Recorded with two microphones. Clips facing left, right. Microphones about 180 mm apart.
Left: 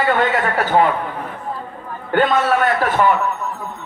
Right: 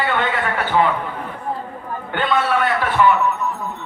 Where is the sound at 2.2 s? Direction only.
40° left (ahead or behind).